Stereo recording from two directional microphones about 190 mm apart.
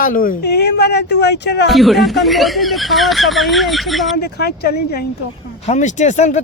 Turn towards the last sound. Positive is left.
turn(degrees=40)  # may be behind; listen again after turning